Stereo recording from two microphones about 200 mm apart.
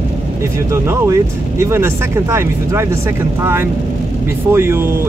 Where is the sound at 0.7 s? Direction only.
15° right (ahead or behind).